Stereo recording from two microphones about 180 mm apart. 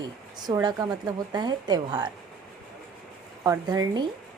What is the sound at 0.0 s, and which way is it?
Speech, 20° right (ahead or behind).